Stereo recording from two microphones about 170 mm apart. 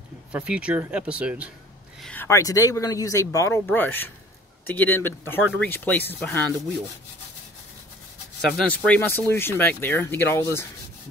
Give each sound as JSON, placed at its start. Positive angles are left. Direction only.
{"t": 0.3, "sound": "speech", "side_deg": -5}
{"t": 2.0, "sound": "speech", "side_deg": 5}
{"t": 2.2, "sound": "speech", "side_deg": 20}
{"t": 8.5, "sound": "speech", "side_deg": 5}